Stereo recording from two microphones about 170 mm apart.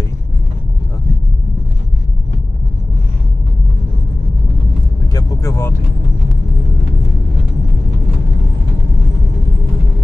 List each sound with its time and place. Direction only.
5.1 s vehicle: 20° left (ahead or behind)